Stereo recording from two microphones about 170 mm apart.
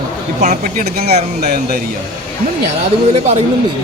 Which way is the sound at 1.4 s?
60° right (ahead or behind).